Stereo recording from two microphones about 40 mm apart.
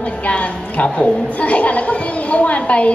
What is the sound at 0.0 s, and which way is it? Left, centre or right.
A woman's voice, left.